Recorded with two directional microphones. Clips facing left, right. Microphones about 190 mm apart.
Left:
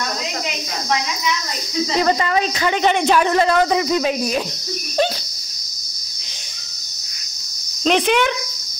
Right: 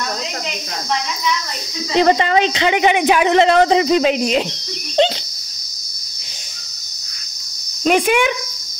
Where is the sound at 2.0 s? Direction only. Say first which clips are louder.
Right 5 dB; 25° right (ahead or behind).